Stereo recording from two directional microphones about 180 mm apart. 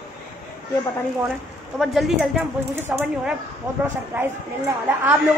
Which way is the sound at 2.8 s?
15° right (ahead or behind).